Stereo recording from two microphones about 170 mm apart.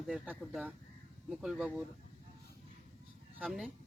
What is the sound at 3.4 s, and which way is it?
Speech, centre (ahead or behind).